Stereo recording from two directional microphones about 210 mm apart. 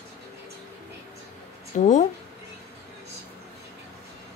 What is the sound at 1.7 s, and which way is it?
Speech, 40° left (ahead or behind).